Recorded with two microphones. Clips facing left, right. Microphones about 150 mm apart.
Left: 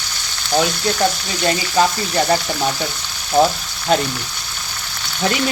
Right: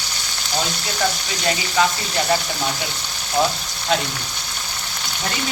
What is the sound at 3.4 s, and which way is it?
Frying, 25° left (ahead or behind).